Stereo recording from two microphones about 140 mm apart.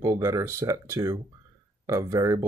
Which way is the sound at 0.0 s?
25° right (ahead or behind).